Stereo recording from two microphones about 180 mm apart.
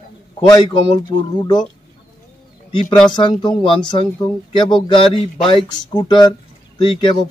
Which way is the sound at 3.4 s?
25° left (ahead or behind).